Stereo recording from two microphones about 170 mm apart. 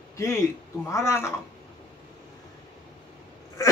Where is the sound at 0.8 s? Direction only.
15° left (ahead or behind).